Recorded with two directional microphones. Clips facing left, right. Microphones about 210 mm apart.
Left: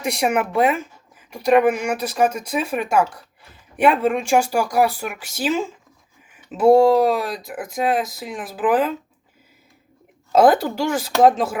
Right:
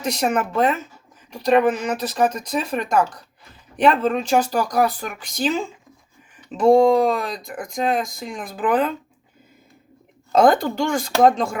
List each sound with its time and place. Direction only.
0.0 s speech: 10° left (ahead or behind)
10.3 s speech: 5° left (ahead or behind)